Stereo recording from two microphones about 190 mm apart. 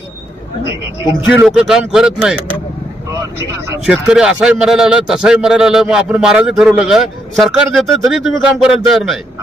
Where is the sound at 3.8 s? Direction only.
5° right (ahead or behind).